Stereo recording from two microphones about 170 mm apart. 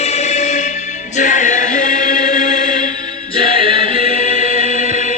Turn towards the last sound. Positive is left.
turn(degrees=50)  # may be behind; listen again after turning